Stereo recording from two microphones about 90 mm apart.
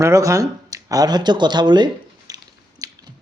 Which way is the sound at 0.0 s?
35° right (ahead or behind).